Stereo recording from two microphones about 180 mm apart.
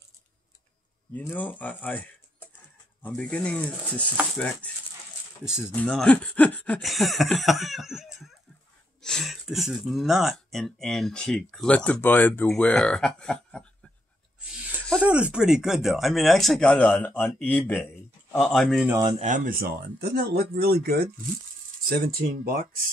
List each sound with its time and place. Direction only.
1.1 s speech: 10° left (ahead or behind)
5.7 s speech: 5° left (ahead or behind)
14.5 s a sound: 5° left (ahead or behind)
15.0 s speech: 5° right (ahead or behind)
19.0 s speech: 40° right (ahead or behind); by 22.6 s 55° right (ahead or behind)